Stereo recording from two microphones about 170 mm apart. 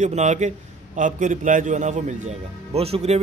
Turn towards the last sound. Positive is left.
turn(degrees=-35)  # may be behind; listen again after turning